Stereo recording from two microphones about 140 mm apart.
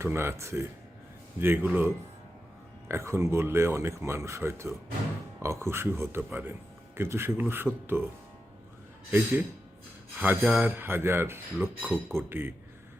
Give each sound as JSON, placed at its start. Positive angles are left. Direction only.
{"t": 0.0, "sound": "speech", "side_deg": -15}
{"t": 2.9, "sound": "speech", "side_deg": -20}
{"t": 9.0, "sound": "speech", "side_deg": -15}
{"t": 11.8, "sound": "speech", "side_deg": 0}
{"t": 12.1, "sound": "speech", "side_deg": -15}